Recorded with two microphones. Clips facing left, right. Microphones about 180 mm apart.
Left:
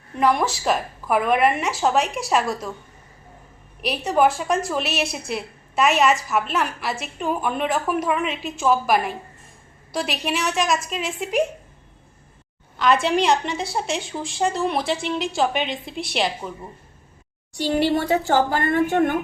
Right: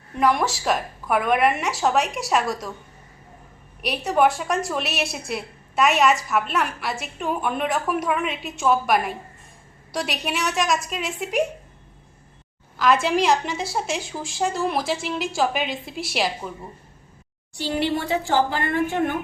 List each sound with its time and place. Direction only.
0.2 s a woman's voice: centre (ahead or behind)
3.8 s a woman's voice: centre (ahead or behind)
12.8 s a woman's voice: centre (ahead or behind)
17.6 s a woman's voice: 45° left (ahead or behind)